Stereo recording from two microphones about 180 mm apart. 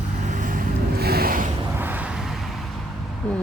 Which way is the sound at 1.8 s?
10° right (ahead or behind).